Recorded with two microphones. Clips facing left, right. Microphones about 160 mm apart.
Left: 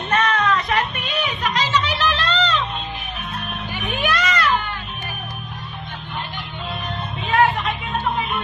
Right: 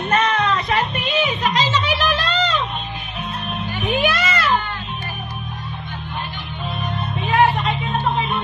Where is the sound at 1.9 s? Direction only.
10° right (ahead or behind).